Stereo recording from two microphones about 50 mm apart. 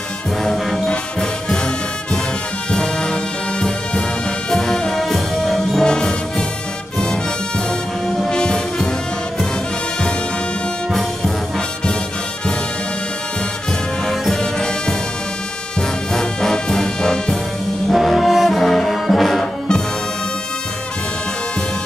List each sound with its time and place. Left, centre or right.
0.4 s brass instrument: centre
2.7 s brass instrument: centre
5.0 s music: centre
8.3 s brass instrument: centre
10.9 s brass instrument: centre
14.0 s music: centre
16.1 s brass instrument: centre